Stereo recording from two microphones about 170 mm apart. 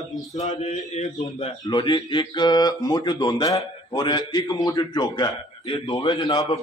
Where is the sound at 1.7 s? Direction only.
25° left (ahead or behind).